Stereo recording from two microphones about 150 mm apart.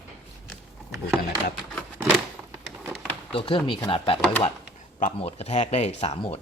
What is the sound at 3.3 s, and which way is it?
Speech, 35° left (ahead or behind).